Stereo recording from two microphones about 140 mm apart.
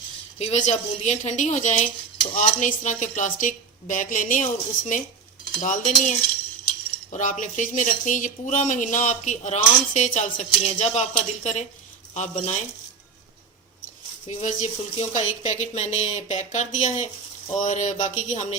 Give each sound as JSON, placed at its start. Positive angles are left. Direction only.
{"t": 0.3, "sound": "speech", "side_deg": 50}
{"t": 2.3, "sound": "speech", "side_deg": 70}
{"t": 12.1, "sound": "speech", "side_deg": 55}
{"t": 14.3, "sound": "speech", "side_deg": 55}